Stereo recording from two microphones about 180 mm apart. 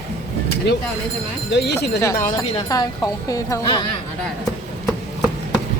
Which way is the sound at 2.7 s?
20° left (ahead or behind).